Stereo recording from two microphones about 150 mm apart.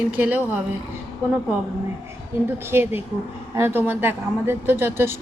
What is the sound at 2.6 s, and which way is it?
Speech, 15° right (ahead or behind).